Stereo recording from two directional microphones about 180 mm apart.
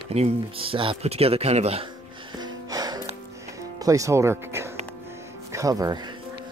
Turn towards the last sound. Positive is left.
turn(degrees=-20)  # may be behind; listen again after turning